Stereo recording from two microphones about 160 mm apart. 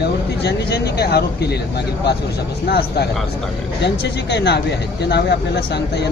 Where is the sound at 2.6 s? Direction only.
85° left.